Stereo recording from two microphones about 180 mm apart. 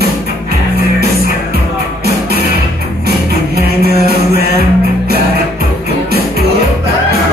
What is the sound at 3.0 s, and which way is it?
Music, 60° right (ahead or behind).